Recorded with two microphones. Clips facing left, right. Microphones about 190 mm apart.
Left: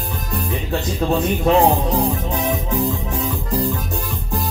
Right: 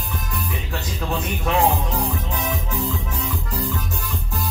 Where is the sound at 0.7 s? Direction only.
30° left (ahead or behind).